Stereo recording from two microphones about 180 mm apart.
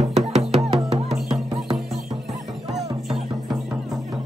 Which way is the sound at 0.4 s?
35° right (ahead or behind).